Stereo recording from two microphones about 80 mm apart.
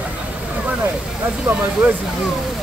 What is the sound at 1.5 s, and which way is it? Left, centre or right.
Speech, centre.